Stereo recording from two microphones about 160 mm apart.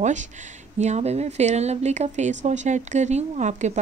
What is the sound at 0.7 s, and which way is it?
Speech, 45° right (ahead or behind).